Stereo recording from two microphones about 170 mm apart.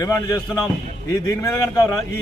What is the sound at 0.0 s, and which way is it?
A man's voice, 20° left (ahead or behind).